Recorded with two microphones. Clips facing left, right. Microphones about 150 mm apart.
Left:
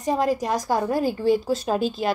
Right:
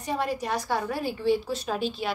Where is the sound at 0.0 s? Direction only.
40° left (ahead or behind).